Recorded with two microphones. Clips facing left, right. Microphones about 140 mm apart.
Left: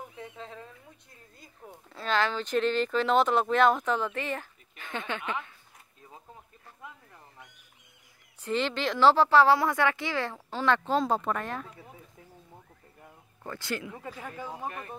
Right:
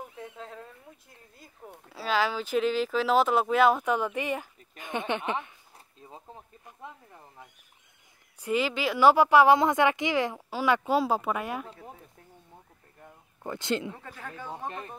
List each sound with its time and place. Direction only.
0.1 s a sound: centre (ahead or behind)
1.4 s speech: centre (ahead or behind); by 7.2 s 20° right (ahead or behind)
8.4 s speech: 10° right (ahead or behind)
13.4 s speech: 20° right (ahead or behind)
13.9 s speech: 10° left (ahead or behind)